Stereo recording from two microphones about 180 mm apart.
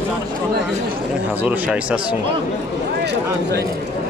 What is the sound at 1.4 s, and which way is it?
Speech, 10° right (ahead or behind).